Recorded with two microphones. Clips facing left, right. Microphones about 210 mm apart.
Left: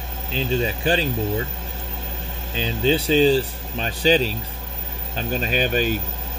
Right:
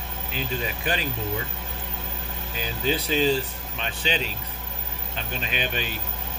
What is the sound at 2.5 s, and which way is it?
Speech, 30° left (ahead or behind).